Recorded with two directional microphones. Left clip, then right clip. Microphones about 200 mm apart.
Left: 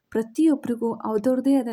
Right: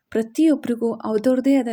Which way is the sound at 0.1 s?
20° right (ahead or behind).